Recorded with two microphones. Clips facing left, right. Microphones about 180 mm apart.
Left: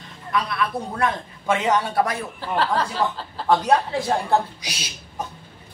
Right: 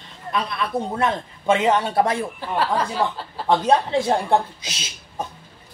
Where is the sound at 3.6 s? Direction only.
25° right (ahead or behind).